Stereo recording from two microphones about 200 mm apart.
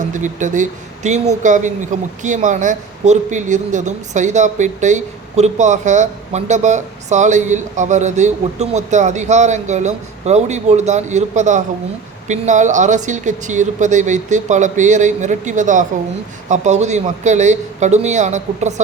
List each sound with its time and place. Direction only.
0.1 s a woman's voice: 40° right (ahead or behind)